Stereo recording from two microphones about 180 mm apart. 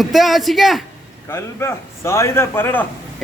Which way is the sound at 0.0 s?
Centre (ahead or behind).